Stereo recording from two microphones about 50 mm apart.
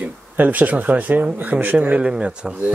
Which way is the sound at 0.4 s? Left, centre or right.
Right.